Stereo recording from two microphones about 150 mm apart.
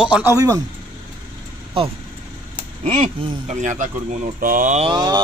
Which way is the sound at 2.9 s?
50° right (ahead or behind).